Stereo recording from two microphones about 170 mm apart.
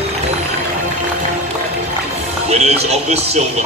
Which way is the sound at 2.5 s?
40° right (ahead or behind).